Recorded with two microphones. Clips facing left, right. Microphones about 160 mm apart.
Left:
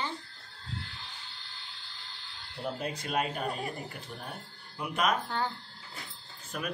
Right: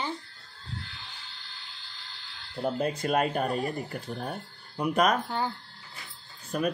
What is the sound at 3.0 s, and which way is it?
Speech, 50° right (ahead or behind).